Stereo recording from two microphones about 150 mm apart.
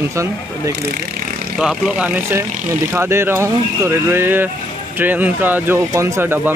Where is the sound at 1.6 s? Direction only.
5° right (ahead or behind).